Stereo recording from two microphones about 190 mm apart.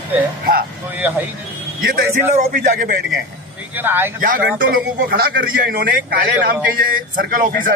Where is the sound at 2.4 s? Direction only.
45° right (ahead or behind).